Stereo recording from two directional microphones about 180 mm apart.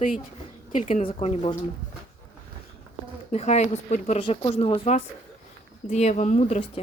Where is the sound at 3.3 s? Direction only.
35° left (ahead or behind).